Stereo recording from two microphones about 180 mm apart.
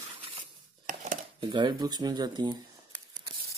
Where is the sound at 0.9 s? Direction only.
45° right (ahead or behind).